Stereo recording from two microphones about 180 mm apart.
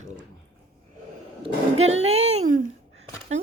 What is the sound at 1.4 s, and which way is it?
Speech, 35° right (ahead or behind).